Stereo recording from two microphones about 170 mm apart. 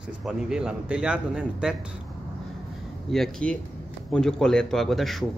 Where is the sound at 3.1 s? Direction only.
Centre (ahead or behind).